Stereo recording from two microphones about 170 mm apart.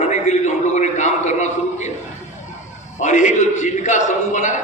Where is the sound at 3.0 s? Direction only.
45° left (ahead or behind).